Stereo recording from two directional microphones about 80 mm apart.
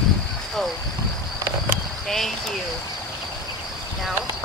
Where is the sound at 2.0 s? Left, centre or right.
Centre.